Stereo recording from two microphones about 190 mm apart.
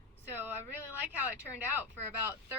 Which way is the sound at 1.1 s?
10° right (ahead or behind).